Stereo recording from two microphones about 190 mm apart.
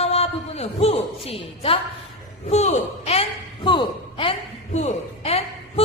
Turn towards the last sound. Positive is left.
turn(degrees=30)  # may be behind; listen again after turning